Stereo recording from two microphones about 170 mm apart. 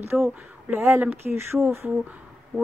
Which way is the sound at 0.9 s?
10° right (ahead or behind).